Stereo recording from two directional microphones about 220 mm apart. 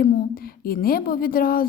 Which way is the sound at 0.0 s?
40° left (ahead or behind).